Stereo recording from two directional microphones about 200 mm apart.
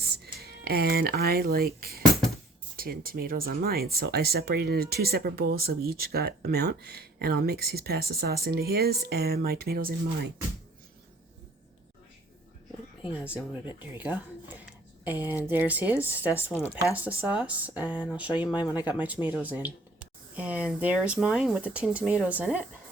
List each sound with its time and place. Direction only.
0.0 s speech: 55° right (ahead or behind)
13.1 s speech: 5° right (ahead or behind)
16.6 s speech: 10° left (ahead or behind)
16.9 s speech: 10° right (ahead or behind)